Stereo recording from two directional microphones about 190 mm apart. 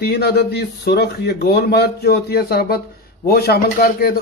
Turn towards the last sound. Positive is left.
turn(degrees=50)  # may be behind; listen again after turning